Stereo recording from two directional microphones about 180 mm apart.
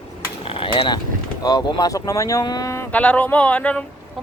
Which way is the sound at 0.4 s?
30° left (ahead or behind).